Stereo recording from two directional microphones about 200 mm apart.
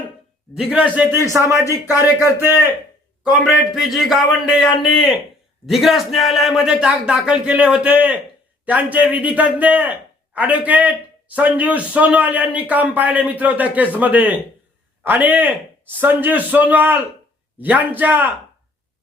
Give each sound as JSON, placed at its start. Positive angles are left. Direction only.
{"t": 1.3, "sound": "a man's voice", "side_deg": -15}
{"t": 1.5, "sound": "speech", "side_deg": 15}
{"t": 2.1, "sound": "a man's voice", "side_deg": -10}